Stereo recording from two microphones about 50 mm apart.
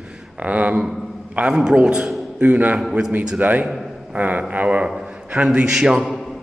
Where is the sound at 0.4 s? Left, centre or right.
Right.